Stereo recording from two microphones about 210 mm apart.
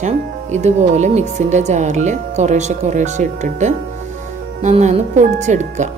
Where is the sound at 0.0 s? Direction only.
35° right (ahead or behind).